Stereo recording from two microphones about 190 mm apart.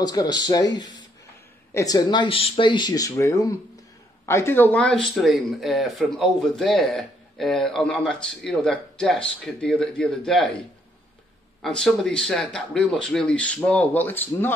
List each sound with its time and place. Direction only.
0.0 s speech: 20° left (ahead or behind); by 10.5 s centre (ahead or behind)
11.6 s speech: centre (ahead or behind)